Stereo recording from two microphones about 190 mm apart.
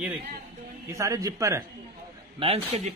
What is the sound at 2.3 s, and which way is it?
Speech, 30° right (ahead or behind).